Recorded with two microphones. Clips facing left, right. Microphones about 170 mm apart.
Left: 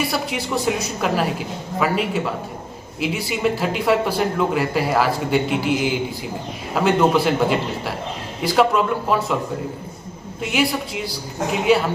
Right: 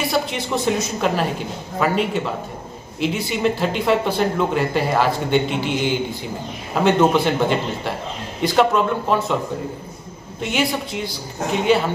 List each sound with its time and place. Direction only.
0.3 s speech: 5° left (ahead or behind)
10.4 s speech: 5° left (ahead or behind)